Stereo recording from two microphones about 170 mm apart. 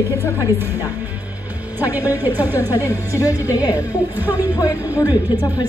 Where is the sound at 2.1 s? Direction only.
10° right (ahead or behind).